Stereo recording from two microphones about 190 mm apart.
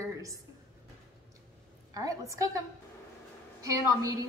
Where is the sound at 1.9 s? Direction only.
15° right (ahead or behind).